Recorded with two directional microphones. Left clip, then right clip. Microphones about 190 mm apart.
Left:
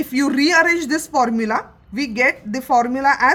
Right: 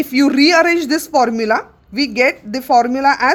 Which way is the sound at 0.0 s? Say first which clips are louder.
Right 5 dB; 25° right (ahead or behind).